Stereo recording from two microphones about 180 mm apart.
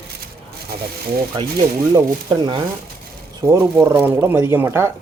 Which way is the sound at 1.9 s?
25° right (ahead or behind).